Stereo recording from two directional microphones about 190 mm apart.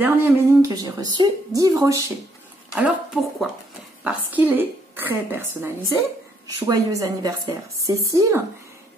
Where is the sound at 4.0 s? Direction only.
10° right (ahead or behind).